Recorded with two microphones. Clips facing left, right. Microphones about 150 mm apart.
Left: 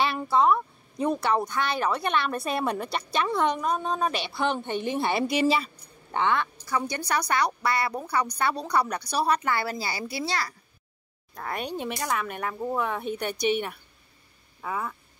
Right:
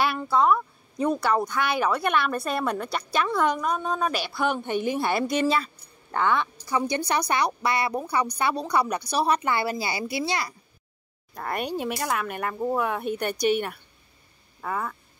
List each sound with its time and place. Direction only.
0.0 s speech: 5° right (ahead or behind)
6.1 s speech: 5° right (ahead or behind)
6.4 s a sound: 20° right (ahead or behind)
6.9 s a woman's voice: 20° right (ahead or behind)
11.3 s speech: 5° right (ahead or behind)